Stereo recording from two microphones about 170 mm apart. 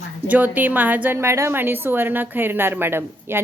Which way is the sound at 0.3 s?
10° right (ahead or behind).